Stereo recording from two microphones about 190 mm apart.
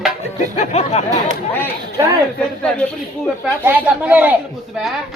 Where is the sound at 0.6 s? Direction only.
35° left (ahead or behind).